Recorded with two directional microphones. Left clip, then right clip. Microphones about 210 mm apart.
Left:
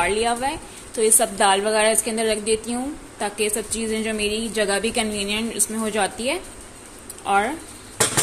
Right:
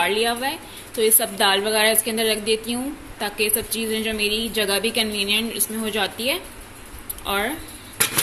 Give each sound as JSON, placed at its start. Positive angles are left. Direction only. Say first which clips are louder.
{"t": 0.0, "sound": "a woman's voice", "louder": "even", "side_deg": 0}
{"t": 4.2, "sound": "a woman's voice", "louder": "right 2 dB", "side_deg": 30}
{"t": 4.5, "sound": "a woman's voice", "louder": "even", "side_deg": 5}
{"t": 7.2, "sound": "a woman's voice", "louder": "left 4 dB", "side_deg": 0}